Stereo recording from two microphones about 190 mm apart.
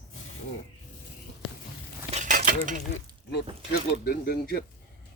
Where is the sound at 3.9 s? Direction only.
55° left (ahead or behind).